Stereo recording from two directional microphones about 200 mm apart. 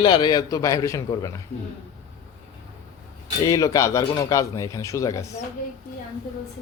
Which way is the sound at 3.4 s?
15° left (ahead or behind).